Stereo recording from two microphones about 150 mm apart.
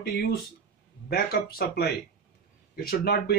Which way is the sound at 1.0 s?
90° left.